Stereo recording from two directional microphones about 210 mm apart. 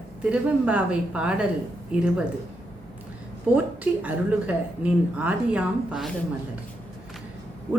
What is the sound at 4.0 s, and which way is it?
A woman's voice, 5° right (ahead or behind).